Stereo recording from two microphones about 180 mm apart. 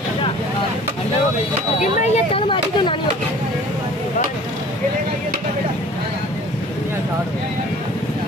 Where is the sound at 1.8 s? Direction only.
40° left (ahead or behind).